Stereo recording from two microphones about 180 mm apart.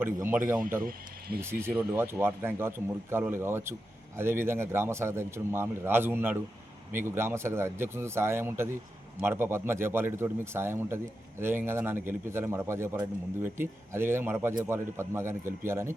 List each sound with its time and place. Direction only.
0.0 s speech: 10° right (ahead or behind)
0.8 s speech: 55° right (ahead or behind)
1.4 s speech: 15° right (ahead or behind)